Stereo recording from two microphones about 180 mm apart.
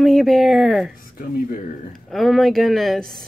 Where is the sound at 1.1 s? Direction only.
50° left (ahead or behind).